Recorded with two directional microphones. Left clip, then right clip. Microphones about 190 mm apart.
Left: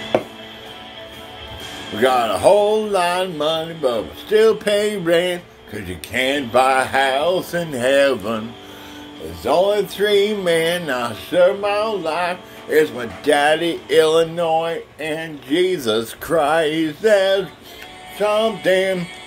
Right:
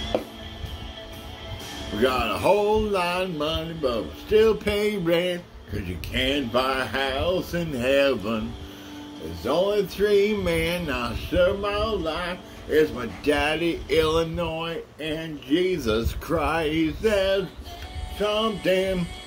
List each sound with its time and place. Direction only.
2.0 s speech: 25° right (ahead or behind)
9.4 s speech: 25° right (ahead or behind)